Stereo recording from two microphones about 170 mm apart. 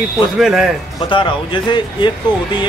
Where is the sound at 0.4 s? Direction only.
5° right (ahead or behind).